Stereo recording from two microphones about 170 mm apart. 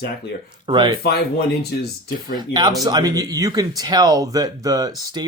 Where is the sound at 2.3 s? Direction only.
25° right (ahead or behind).